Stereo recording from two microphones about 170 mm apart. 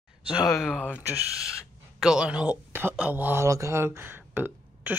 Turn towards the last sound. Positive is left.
turn(degrees=-10)  # may be behind; listen again after turning